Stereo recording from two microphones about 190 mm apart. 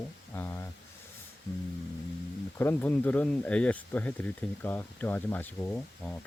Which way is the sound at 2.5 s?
10° left (ahead or behind).